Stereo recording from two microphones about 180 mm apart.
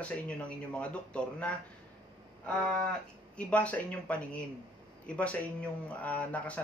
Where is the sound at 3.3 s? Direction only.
5° left (ahead or behind).